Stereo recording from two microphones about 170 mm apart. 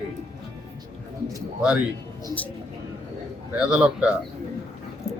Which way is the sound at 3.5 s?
5° right (ahead or behind).